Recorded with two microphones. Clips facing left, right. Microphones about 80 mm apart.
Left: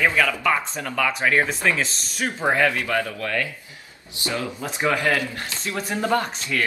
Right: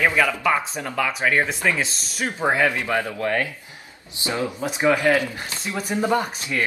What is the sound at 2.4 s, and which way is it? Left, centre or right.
Speech, centre.